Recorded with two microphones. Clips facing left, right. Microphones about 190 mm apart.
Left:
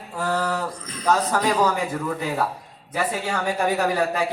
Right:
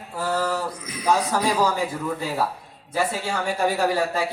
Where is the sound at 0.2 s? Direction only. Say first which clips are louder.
Even; 5° right (ahead or behind).